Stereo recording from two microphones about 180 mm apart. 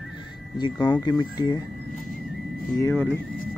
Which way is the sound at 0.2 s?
25° left (ahead or behind).